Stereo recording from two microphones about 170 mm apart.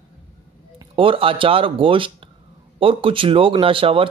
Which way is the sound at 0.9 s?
30° right (ahead or behind).